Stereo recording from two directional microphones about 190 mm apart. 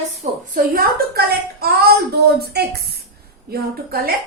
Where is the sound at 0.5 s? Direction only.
50° right (ahead or behind).